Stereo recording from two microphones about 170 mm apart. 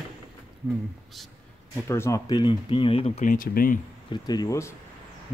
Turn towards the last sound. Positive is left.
turn(degrees=15)  # may be behind; listen again after turning